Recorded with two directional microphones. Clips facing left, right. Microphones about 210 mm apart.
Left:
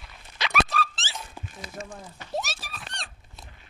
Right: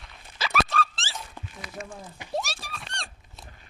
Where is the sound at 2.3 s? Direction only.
Centre (ahead or behind).